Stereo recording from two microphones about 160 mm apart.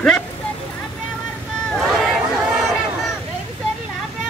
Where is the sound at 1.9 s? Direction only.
Centre (ahead or behind).